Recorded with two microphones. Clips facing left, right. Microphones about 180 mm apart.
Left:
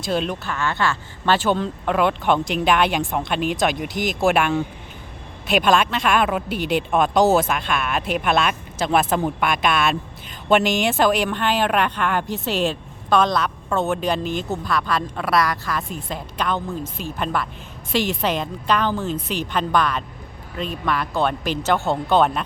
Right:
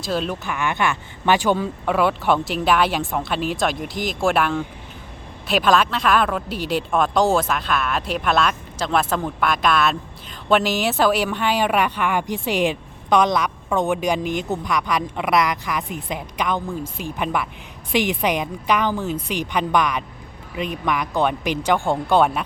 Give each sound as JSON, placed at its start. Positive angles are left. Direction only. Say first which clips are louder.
{"t": 0.0, "sound": "speech", "louder": "left 1 dB", "side_deg": 0}
{"t": 0.4, "sound": "speech", "louder": "right 1 dB", "side_deg": -15}